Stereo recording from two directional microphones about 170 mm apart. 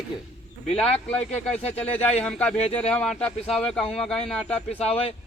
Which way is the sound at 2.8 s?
5° left (ahead or behind).